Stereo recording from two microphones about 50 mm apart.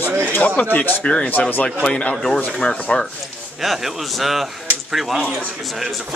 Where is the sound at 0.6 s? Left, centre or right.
Left.